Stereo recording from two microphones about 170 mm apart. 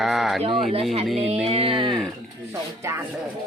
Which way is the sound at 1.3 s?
40° right (ahead or behind).